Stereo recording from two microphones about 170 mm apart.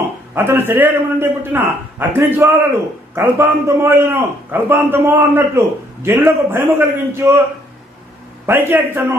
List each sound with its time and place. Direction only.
0.3 s a man's voice: 15° right (ahead or behind)
8.4 s a man's voice: 10° right (ahead or behind)